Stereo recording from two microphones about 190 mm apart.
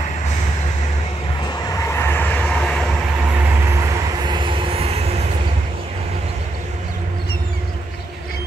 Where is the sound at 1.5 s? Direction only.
15° left (ahead or behind).